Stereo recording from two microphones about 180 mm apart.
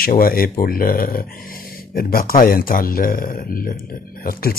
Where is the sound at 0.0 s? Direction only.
55° left (ahead or behind).